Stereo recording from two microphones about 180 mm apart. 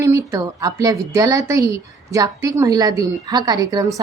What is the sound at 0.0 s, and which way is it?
Speech, 15° right (ahead or behind).